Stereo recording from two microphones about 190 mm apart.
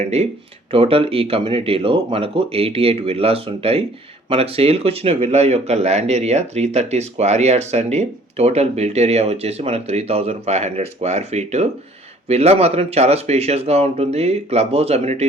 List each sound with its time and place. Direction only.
0.0 s speech: 35° right (ahead or behind)